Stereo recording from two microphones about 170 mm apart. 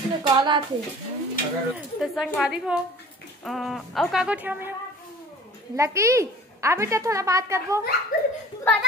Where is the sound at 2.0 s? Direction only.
Centre (ahead or behind).